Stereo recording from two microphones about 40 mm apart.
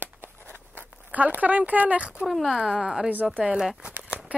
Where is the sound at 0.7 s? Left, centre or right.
Right.